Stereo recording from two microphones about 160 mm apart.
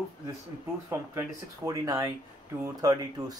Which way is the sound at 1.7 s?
20° right (ahead or behind).